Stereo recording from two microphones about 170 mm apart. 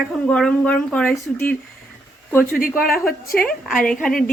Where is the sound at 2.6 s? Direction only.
60° left (ahead or behind).